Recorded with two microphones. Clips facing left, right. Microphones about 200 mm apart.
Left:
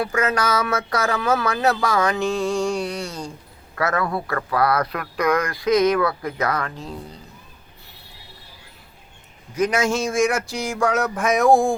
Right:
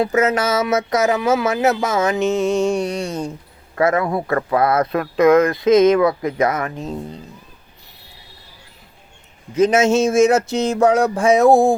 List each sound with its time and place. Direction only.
0.0 s speech: 20° right (ahead or behind)
9.6 s speech: 25° right (ahead or behind)